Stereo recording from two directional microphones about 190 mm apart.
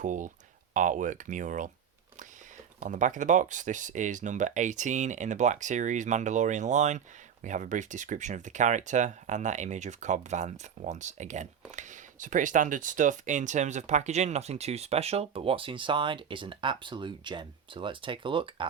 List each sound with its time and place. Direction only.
0.0 s speech: 40° right (ahead or behind)
2.8 s speech: 40° right (ahead or behind); by 18.6 s 25° right (ahead or behind)